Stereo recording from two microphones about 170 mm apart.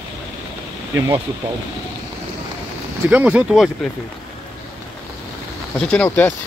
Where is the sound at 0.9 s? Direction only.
20° right (ahead or behind).